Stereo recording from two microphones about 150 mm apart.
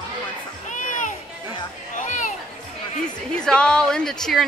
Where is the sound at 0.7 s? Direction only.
60° left (ahead or behind).